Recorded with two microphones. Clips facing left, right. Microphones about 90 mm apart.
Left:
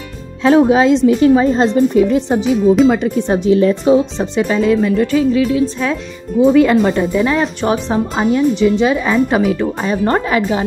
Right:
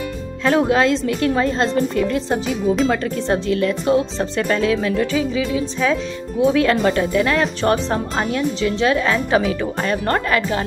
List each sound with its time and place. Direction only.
0.6 s a woman's voice: 10° left (ahead or behind)
2.5 s speech: centre (ahead or behind)
2.9 s a woman's voice: 10° left (ahead or behind)
3.8 s speech: 5° left (ahead or behind)
10.1 s a woman's voice: 15° left (ahead or behind)